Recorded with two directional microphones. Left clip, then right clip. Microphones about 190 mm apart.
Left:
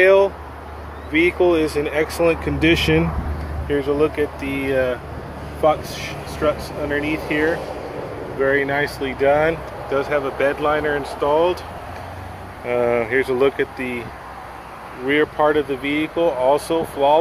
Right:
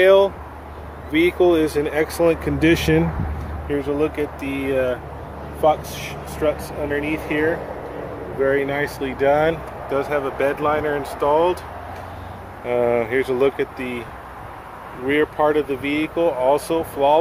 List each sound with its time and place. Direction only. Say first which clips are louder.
0.0 s speech: even; 20° right (ahead or behind)
3.6 s speech: left 3 dB; centre (ahead or behind)
9.0 s speech: even; 20° right (ahead or behind)
9.9 s speech: left 1 dB; 5° right (ahead or behind)
12.6 s speech: even; 15° right (ahead or behind)
15.0 s speech: left 1 dB; 5° right (ahead or behind)